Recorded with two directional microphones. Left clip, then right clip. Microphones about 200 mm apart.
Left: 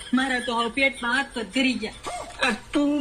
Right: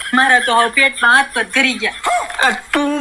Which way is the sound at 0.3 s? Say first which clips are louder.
Right 14 dB; 50° right (ahead or behind).